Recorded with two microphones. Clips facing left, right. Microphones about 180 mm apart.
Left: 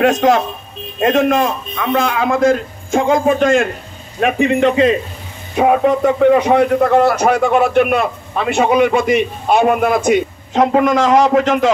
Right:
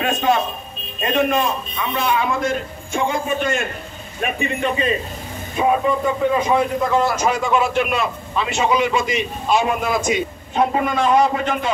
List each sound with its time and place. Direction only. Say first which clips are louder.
0.0 s a man's voice: left 6 dB; 90° left
5.6 s a man's voice: left 6 dB; 75° left (ahead or behind); by 11.7 s 90° left